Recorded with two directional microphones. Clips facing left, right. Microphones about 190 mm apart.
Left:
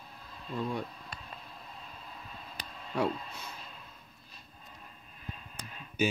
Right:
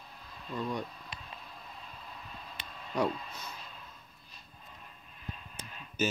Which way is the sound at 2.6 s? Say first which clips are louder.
Left 2 dB; 40° left (ahead or behind).